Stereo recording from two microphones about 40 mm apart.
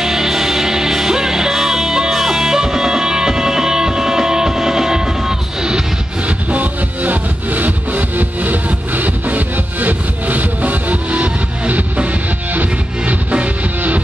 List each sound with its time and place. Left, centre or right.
0.0 s music: centre
6.2 s music: right